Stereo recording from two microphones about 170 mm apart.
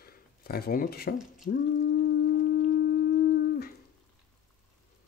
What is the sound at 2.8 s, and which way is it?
Humming, 70° left (ahead or behind).